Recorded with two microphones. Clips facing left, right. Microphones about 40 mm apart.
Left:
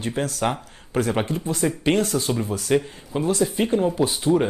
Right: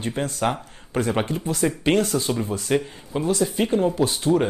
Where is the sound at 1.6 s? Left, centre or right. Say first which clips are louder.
Right 1 dB; centre.